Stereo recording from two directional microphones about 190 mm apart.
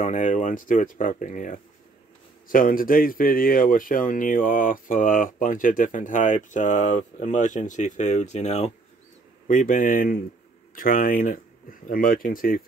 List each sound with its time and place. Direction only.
0.0 s speech: 40° left (ahead or behind)